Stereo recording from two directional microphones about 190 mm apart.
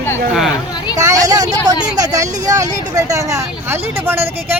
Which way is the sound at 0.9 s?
20° right (ahead or behind).